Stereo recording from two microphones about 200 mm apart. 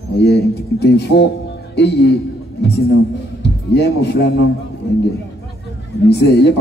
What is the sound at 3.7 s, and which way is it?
Speech, 55° left (ahead or behind).